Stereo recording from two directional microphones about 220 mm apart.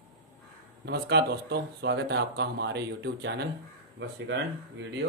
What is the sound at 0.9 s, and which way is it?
Speech, 50° right (ahead or behind).